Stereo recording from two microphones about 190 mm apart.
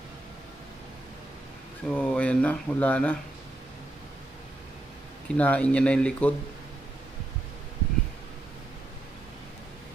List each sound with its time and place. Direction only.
1.9 s speech: 5° left (ahead or behind)
5.3 s speech: 5° left (ahead or behind)